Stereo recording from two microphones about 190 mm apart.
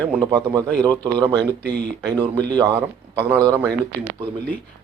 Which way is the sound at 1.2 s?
20° right (ahead or behind).